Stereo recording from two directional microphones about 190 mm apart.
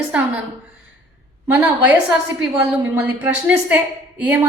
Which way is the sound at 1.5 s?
5° right (ahead or behind).